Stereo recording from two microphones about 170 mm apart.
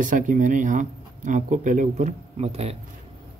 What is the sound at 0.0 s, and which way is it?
Speech, 50° right (ahead or behind).